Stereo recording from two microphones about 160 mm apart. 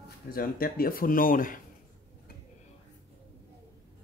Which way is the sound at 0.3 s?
65° left (ahead or behind).